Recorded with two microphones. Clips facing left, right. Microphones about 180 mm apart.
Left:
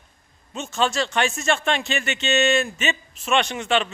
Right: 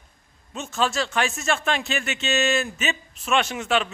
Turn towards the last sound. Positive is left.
turn(degrees=-5)  # may be behind; listen again after turning